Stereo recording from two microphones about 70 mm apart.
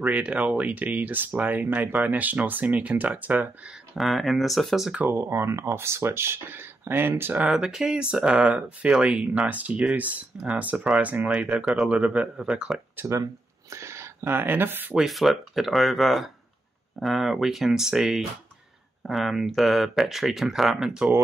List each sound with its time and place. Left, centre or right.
0.0 s speech: centre
3.6 s speech: centre
5.1 s speech: right
7.4 s speech: centre
13.7 s speech: right
15.0 s speech: centre